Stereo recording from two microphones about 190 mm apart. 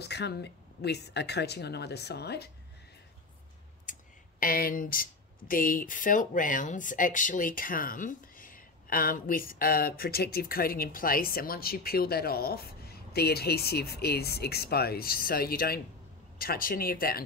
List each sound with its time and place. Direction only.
0.0 s speech: 60° left (ahead or behind)
4.4 s speech: 50° left (ahead or behind)